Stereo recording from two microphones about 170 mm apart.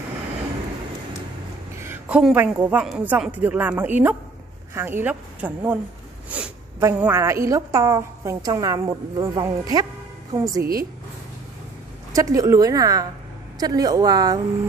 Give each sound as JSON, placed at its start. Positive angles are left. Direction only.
{"t": 1.8, "sound": "a woman's voice", "side_deg": -10}
{"t": 10.6, "sound": "speech", "side_deg": -60}
{"t": 12.1, "sound": "a woman's voice", "side_deg": -20}